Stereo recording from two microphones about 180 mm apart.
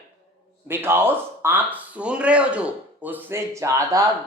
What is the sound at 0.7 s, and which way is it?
Speech, 10° right (ahead or behind).